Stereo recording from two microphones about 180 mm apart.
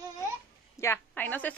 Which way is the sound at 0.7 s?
15° left (ahead or behind).